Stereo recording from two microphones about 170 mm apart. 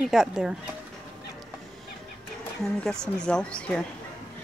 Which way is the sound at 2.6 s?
5° left (ahead or behind).